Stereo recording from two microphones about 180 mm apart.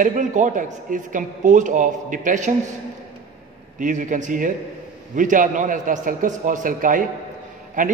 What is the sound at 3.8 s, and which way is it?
A man's voice, 45° right (ahead or behind).